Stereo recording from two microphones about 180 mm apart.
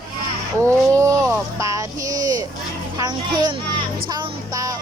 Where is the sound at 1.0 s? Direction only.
15° right (ahead or behind).